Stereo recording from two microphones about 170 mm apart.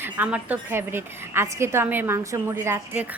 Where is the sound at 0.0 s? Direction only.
10° right (ahead or behind).